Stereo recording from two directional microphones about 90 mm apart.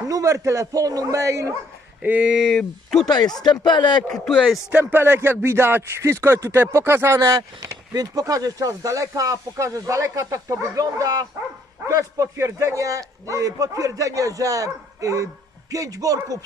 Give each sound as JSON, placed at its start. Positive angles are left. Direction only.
{"t": 0.1, "sound": "a man's voice", "side_deg": -35}
{"t": 2.0, "sound": "speech", "side_deg": -15}
{"t": 2.5, "sound": "speech", "side_deg": 5}
{"t": 3.1, "sound": "speech", "side_deg": 50}
{"t": 4.3, "sound": "speech", "side_deg": 0}
{"t": 4.7, "sound": "a man's voice", "side_deg": -25}